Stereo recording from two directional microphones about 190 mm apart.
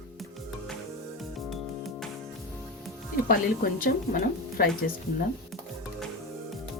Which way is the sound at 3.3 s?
50° left (ahead or behind).